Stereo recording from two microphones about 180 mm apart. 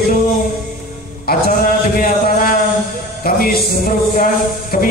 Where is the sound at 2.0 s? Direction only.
50° left (ahead or behind).